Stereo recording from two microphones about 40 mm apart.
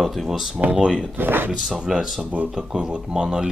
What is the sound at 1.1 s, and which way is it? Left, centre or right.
Speech, right.